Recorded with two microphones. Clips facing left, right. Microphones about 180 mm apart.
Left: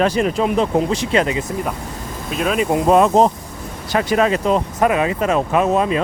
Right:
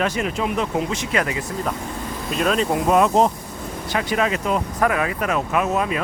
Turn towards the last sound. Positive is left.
turn(degrees=30)  # may be behind; listen again after turning